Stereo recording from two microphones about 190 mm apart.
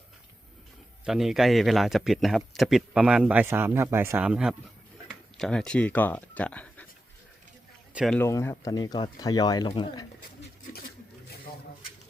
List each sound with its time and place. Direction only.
1.0 s a man's voice: centre (ahead or behind)
7.9 s a man's voice: centre (ahead or behind)
8.2 s speech: 15° left (ahead or behind)